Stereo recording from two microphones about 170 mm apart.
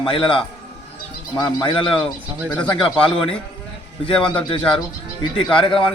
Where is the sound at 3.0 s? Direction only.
30° left (ahead or behind).